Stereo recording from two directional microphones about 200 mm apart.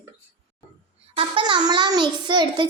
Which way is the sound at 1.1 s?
25° right (ahead or behind).